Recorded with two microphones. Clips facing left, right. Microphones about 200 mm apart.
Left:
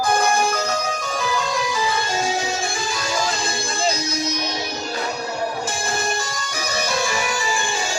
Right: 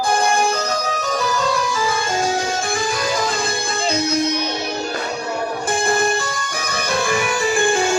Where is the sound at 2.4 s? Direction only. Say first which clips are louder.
Right 3 dB; 55° right (ahead or behind).